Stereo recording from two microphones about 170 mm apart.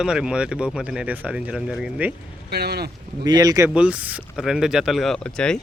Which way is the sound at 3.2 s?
25° right (ahead or behind).